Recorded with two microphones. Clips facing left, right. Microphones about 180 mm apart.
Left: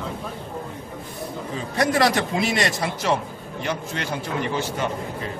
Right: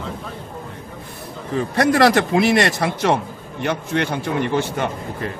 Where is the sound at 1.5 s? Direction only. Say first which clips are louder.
Right 5 dB; 65° right (ahead or behind).